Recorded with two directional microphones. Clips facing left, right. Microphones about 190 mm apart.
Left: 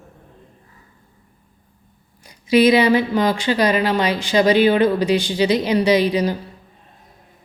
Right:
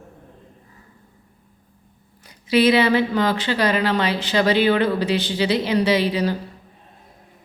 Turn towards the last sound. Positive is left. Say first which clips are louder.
# left 3 dB
turn(degrees=15)  # may be behind; listen again after turning